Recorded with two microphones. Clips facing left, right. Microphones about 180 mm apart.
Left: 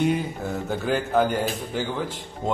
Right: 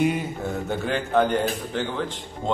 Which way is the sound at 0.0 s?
Centre (ahead or behind).